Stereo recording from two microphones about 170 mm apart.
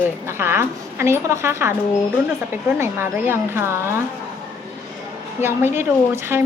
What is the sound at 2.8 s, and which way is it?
A woman's voice, 15° right (ahead or behind).